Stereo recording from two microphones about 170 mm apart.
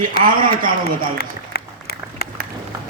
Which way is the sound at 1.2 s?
65° left (ahead or behind).